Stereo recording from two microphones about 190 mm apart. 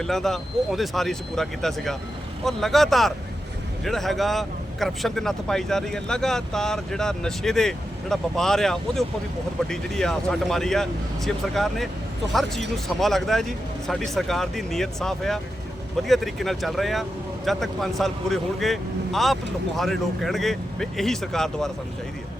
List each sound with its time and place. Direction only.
0.0 s speech: centre (ahead or behind)